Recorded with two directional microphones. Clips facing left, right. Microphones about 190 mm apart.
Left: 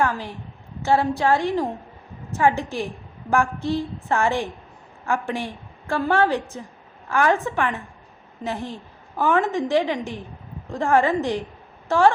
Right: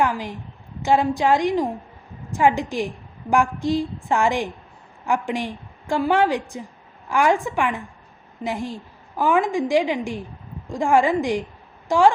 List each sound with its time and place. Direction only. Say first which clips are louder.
0.0 s a woman's voice: right 1 dB; 15° right (ahead or behind)